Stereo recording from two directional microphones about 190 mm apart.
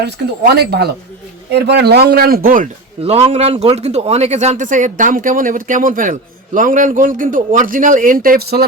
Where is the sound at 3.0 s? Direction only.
30° right (ahead or behind).